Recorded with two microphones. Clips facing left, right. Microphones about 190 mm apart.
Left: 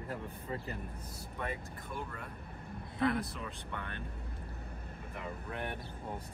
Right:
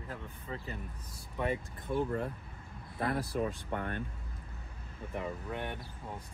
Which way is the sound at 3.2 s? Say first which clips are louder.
Right 9 dB; 35° right (ahead or behind).